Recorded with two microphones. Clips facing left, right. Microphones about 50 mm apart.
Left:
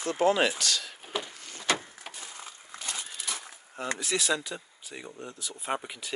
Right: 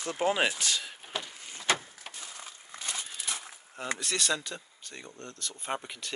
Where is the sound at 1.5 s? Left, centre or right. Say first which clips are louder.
Even; right.